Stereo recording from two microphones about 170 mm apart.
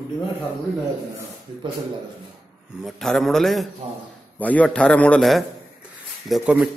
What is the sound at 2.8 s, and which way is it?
A man's voice, centre (ahead or behind).